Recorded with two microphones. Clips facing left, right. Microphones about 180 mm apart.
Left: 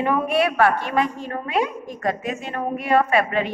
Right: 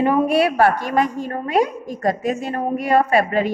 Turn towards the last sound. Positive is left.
turn(degrees=-40)  # may be behind; listen again after turning